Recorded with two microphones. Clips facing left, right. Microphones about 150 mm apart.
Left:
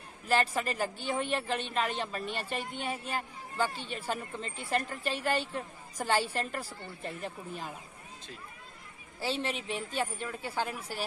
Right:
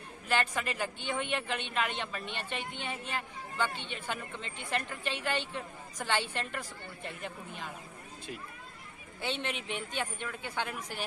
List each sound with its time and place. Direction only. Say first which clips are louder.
0.3 s a woman's voice: left 3 dB; 35° left (ahead or behind)
9.2 s a woman's voice: left 3 dB; 35° left (ahead or behind)